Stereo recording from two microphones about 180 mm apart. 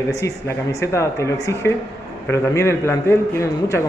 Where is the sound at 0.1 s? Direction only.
15° left (ahead or behind).